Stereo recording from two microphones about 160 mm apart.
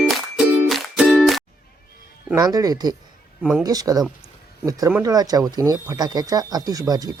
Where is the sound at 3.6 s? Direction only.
20° right (ahead or behind).